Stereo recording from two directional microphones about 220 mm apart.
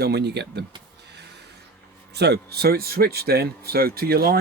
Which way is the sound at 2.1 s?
50° right (ahead or behind).